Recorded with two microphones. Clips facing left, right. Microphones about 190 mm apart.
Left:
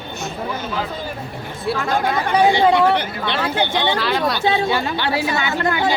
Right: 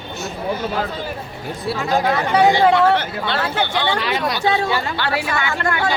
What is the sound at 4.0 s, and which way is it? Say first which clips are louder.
Speech: left 2 dB; centre (ahead or behind).